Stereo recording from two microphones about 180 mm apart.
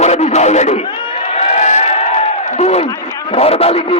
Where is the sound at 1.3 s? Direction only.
40° left (ahead or behind).